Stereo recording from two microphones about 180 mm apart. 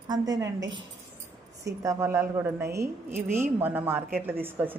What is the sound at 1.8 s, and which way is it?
A woman's voice, 15° right (ahead or behind).